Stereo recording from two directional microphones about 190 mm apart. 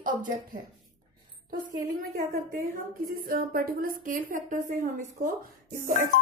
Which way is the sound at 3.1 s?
50° right (ahead or behind).